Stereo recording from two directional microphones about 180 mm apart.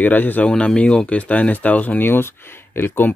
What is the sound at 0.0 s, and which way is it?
Speech, 10° left (ahead or behind).